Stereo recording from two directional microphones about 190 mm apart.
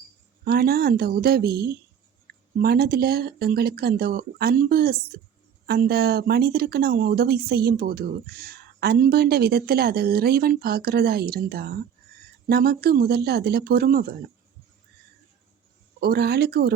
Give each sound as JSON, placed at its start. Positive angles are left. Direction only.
{"t": 0.4, "sound": "speech", "side_deg": -55}
{"t": 16.0, "sound": "speech", "side_deg": -55}